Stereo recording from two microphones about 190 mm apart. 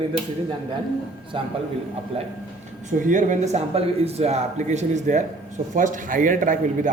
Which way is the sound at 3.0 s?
40° right (ahead or behind).